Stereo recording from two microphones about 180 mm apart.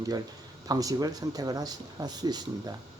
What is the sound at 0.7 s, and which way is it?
Speech, 20° right (ahead or behind).